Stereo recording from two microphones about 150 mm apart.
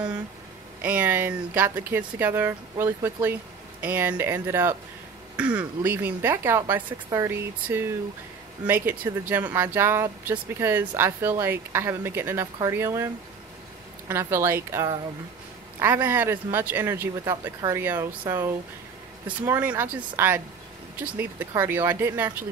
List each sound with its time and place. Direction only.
0.8 s speech: 10° right (ahead or behind)